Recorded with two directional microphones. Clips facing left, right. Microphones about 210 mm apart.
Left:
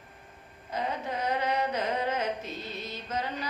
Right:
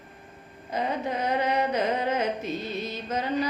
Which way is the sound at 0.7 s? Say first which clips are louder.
Right 4 dB; 15° right (ahead or behind).